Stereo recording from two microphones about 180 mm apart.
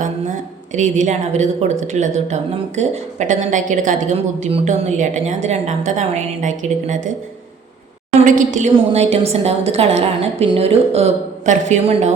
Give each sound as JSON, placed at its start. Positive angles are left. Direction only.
{"t": 0.0, "sound": "a woman's voice", "side_deg": -45}
{"t": 8.2, "sound": "a woman's voice", "side_deg": -45}